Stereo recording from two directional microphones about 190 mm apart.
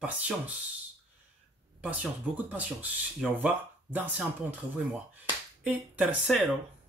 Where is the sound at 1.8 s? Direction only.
5° right (ahead or behind).